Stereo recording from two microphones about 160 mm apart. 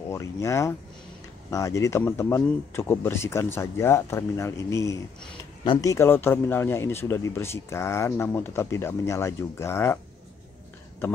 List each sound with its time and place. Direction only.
0.1 s speech: 20° left (ahead or behind)